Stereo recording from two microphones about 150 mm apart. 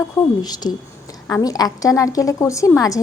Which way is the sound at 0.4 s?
25° left (ahead or behind).